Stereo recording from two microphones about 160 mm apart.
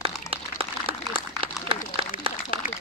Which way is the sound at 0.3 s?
35° right (ahead or behind).